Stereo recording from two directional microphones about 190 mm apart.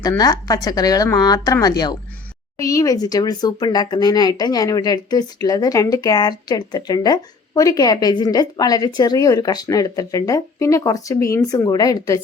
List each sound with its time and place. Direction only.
0.2 s speech: 20° left (ahead or behind)